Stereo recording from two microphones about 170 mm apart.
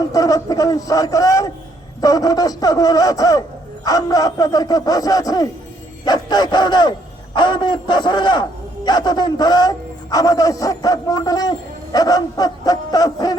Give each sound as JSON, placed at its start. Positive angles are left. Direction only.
{"t": 0.1, "sound": "a man's voice", "side_deg": 20}